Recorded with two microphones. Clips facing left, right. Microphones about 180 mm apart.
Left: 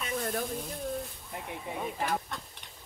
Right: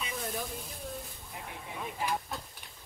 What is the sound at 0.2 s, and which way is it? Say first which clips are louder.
Speech: left 5 dB; centre (ahead or behind).